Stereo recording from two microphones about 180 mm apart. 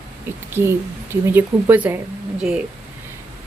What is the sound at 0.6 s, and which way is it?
A woman's voice, 10° right (ahead or behind).